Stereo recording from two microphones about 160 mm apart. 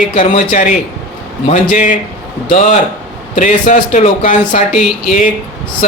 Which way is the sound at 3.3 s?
50° left (ahead or behind).